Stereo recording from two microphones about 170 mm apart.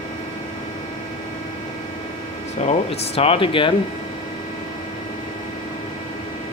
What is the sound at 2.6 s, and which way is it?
Speech, 35° left (ahead or behind).